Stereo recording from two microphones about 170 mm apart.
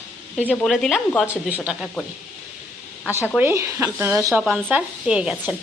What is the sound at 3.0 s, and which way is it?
Speech, 10° left (ahead or behind).